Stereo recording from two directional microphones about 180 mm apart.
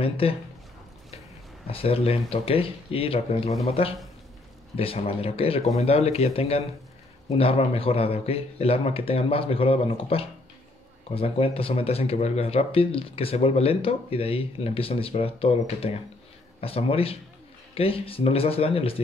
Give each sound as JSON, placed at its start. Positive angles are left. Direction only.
{"t": 0.0, "sound": "speech", "side_deg": 30}
{"t": 1.7, "sound": "speech", "side_deg": 30}